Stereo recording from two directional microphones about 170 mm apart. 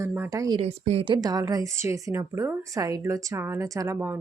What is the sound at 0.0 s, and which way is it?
Speech, 15° right (ahead or behind).